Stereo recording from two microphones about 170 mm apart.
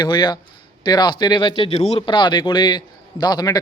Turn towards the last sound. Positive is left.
turn(degrees=25)  # may be behind; listen again after turning